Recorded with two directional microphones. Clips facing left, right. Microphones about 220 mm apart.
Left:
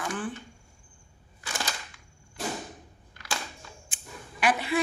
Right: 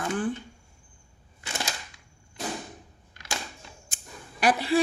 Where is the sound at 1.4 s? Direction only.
25° right (ahead or behind).